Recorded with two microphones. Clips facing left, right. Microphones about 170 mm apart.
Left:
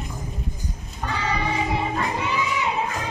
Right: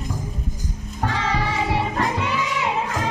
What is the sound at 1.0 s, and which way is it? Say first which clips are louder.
Music: right 2 dB; 85° right.